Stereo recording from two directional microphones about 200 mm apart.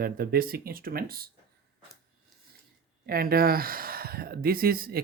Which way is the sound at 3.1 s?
50° right (ahead or behind).